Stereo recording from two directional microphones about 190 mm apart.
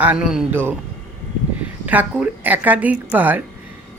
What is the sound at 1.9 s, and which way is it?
Speech, 10° right (ahead or behind).